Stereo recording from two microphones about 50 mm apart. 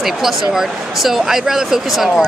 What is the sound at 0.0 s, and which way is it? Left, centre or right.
Speech, centre.